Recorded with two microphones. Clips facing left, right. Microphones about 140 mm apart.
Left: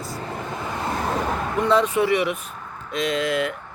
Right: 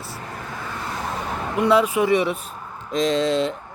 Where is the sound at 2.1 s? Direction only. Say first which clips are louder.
Right 2 dB; 25° right (ahead or behind).